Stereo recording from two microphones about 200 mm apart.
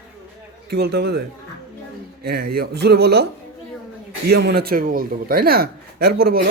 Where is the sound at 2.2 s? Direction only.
50° right (ahead or behind).